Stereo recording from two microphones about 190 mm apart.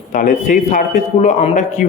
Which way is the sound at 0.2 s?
40° left (ahead or behind).